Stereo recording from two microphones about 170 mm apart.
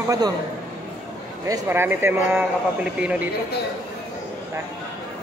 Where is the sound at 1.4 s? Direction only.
15° right (ahead or behind).